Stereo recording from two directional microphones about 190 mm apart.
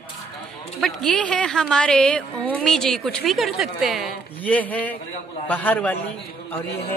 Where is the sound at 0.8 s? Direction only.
Centre (ahead or behind).